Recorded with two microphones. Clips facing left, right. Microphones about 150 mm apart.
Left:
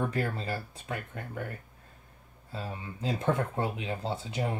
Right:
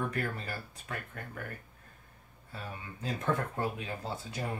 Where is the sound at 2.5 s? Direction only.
25° left (ahead or behind).